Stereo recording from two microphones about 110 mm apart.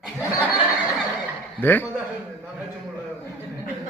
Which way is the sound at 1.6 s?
15° left (ahead or behind).